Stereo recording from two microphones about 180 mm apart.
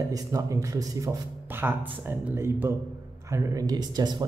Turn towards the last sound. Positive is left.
turn(degrees=-25)  # may be behind; listen again after turning